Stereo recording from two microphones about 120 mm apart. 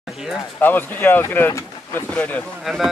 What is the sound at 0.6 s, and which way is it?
Speech, 15° left (ahead or behind).